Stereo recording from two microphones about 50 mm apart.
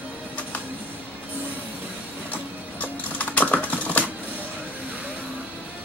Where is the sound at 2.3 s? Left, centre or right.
Left.